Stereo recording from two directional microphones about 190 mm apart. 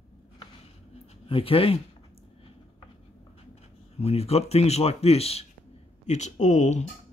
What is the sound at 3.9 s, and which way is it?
Speech, 35° left (ahead or behind).